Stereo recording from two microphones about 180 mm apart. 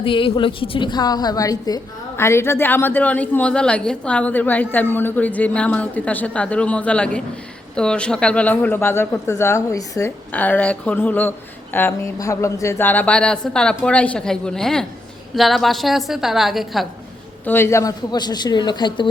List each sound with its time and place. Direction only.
0.0 s a woman's voice: 30° left (ahead or behind); by 16.8 s centre (ahead or behind)
17.4 s a man's voice: 10° left (ahead or behind)